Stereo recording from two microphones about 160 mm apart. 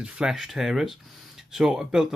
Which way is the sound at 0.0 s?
5° right (ahead or behind).